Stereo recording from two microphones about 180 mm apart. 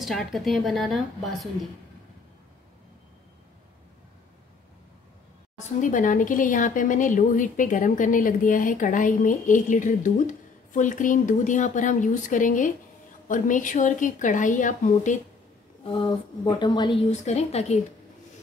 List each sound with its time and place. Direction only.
0.0 s a woman's voice: centre (ahead or behind)
5.6 s a woman's voice: 45° left (ahead or behind)
15.8 s speech: 25° left (ahead or behind)
17.1 s a woman's voice: 40° left (ahead or behind)